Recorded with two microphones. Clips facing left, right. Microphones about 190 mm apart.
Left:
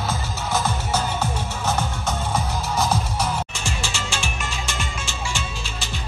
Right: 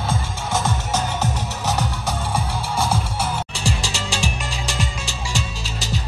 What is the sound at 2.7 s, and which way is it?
Music, 30° right (ahead or behind).